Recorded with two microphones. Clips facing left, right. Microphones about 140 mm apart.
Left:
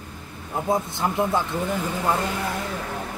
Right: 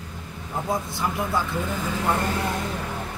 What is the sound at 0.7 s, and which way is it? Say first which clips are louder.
Speech: left 4 dB; 25° left (ahead or behind).